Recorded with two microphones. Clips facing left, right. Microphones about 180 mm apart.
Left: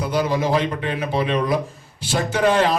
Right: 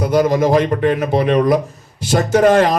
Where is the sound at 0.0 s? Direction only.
45° right (ahead or behind).